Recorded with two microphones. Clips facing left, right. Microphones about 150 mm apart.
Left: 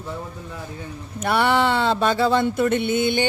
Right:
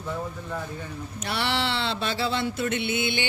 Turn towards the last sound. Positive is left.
turn(degrees=45)  # may be behind; listen again after turning